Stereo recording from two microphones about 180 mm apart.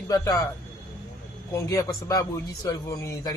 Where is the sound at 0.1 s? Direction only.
20° left (ahead or behind).